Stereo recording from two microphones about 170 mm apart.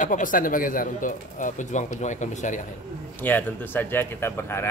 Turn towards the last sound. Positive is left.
turn(degrees=15)  # may be behind; listen again after turning